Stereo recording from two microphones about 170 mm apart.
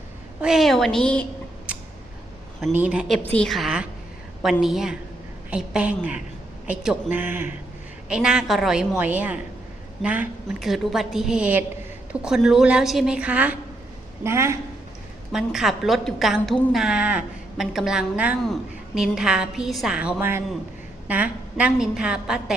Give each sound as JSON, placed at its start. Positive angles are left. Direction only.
{"t": 0.4, "sound": "a woman's voice", "side_deg": 0}
{"t": 2.7, "sound": "a woman's voice", "side_deg": -5}
{"t": 15.3, "sound": "a woman's voice", "side_deg": -5}